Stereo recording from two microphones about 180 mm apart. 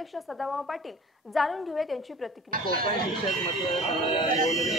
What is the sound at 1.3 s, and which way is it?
Speech, centre (ahead or behind).